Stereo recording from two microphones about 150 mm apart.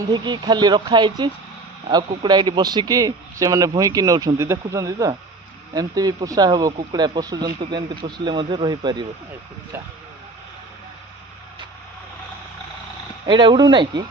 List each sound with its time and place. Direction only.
0.1 s a man's voice: 30° right (ahead or behind)
13.3 s speech: 30° right (ahead or behind)